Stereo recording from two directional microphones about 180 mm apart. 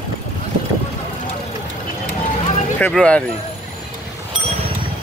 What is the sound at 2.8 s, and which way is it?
Speech, 5° left (ahead or behind).